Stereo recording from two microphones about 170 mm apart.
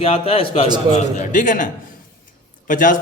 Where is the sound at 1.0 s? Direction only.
45° left (ahead or behind).